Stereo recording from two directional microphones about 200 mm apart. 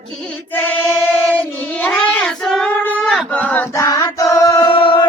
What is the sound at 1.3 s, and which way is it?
Child singing, 5° left (ahead or behind).